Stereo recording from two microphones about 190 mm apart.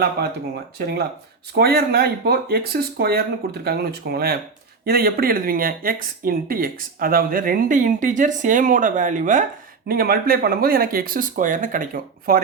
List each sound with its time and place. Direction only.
0.2 s speech: 60° right (ahead or behind)